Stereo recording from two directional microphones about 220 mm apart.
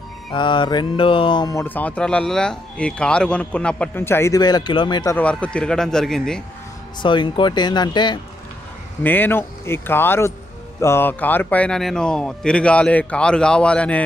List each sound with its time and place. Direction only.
0.3 s speech: 20° left (ahead or behind)
5.1 s speech: 5° left (ahead or behind)
7.0 s speech: 20° left (ahead or behind)
9.0 s speech: 10° left (ahead or behind)